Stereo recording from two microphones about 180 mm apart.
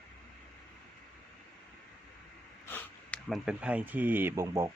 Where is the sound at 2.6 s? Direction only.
10° left (ahead or behind).